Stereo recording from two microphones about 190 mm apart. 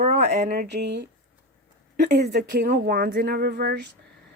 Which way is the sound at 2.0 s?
60° right (ahead or behind).